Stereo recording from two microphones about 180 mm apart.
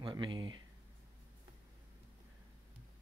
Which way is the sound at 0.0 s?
25° right (ahead or behind).